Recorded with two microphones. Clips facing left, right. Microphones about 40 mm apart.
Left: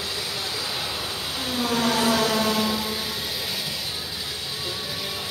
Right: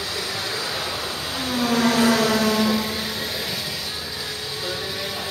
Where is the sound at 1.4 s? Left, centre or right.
Centre.